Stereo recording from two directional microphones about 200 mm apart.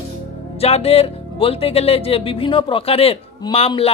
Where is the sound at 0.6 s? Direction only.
30° left (ahead or behind).